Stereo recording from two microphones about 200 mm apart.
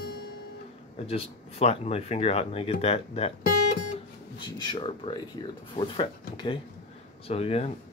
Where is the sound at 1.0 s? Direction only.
30° left (ahead or behind).